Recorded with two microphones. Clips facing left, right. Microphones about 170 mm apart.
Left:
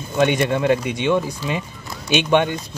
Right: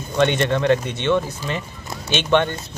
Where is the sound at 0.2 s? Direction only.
10° left (ahead or behind).